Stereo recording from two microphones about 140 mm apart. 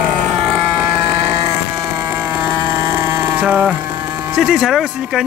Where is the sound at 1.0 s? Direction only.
40° right (ahead or behind).